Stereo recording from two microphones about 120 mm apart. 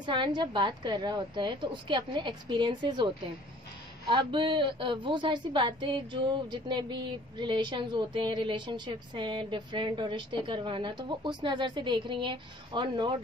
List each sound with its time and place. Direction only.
0.0 s a woman's voice: 40° right (ahead or behind)
4.1 s a woman's voice: 40° right (ahead or behind)